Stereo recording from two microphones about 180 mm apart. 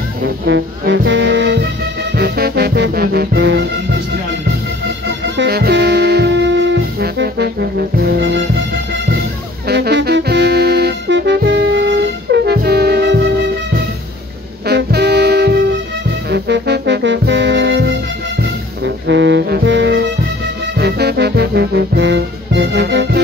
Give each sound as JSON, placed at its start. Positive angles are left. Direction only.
{"t": 0.5, "sound": "speech", "side_deg": -80}
{"t": 2.1, "sound": "music", "side_deg": -60}
{"t": 5.4, "sound": "music", "side_deg": -65}
{"t": 9.7, "sound": "music", "side_deg": -70}
{"t": 14.7, "sound": "music", "side_deg": -65}